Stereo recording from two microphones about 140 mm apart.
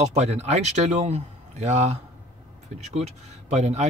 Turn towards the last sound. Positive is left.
turn(degrees=-50)  # may be behind; listen again after turning